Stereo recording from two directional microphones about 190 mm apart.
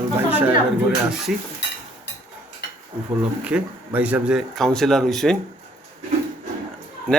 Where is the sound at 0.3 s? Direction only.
10° right (ahead or behind).